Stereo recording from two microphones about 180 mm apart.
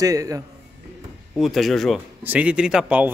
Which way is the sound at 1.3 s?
Centre (ahead or behind).